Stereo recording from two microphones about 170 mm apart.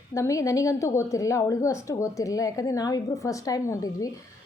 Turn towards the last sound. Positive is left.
turn(degrees=20)  # may be behind; listen again after turning